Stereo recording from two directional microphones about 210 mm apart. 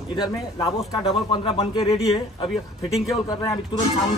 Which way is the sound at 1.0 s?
25° left (ahead or behind).